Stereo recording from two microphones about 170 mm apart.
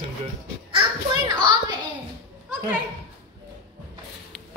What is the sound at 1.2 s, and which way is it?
Speech, 25° right (ahead or behind).